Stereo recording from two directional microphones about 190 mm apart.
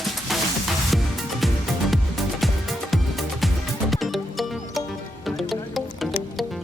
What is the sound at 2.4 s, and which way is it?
Music, centre (ahead or behind).